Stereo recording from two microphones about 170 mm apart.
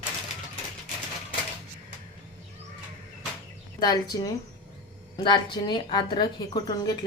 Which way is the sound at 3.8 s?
25° left (ahead or behind).